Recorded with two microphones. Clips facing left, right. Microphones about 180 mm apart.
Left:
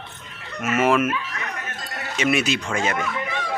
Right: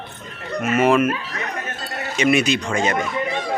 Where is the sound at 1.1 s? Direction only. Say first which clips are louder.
Right 3 dB; 35° right (ahead or behind).